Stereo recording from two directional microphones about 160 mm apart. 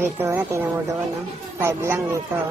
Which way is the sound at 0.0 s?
15° right (ahead or behind).